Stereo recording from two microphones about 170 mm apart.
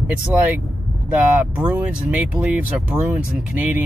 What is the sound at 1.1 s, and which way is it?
Speech, 10° right (ahead or behind).